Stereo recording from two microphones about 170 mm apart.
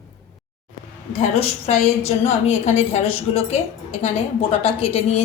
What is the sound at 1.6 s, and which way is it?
Speech, 40° left (ahead or behind).